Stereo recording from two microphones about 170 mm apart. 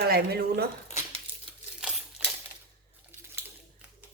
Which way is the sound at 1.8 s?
Centre (ahead or behind).